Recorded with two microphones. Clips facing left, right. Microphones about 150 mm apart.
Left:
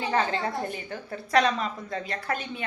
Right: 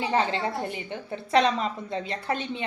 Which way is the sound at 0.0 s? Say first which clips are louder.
Right 1 dB; 25° right (ahead or behind).